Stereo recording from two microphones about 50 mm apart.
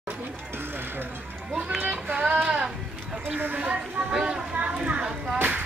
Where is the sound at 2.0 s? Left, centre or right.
Right.